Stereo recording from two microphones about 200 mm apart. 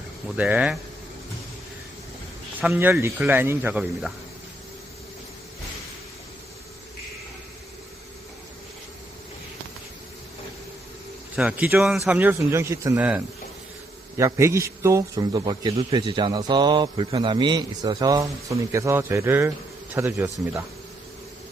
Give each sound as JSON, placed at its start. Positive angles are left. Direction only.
{"t": 0.3, "sound": "a man's voice", "side_deg": -10}
{"t": 2.6, "sound": "a man's voice", "side_deg": -10}
{"t": 11.3, "sound": "a man's voice", "side_deg": -5}